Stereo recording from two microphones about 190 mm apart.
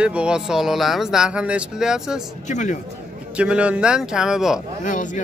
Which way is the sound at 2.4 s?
40° left (ahead or behind).